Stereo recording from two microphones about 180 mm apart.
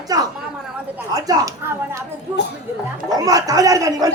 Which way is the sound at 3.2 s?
20° right (ahead or behind).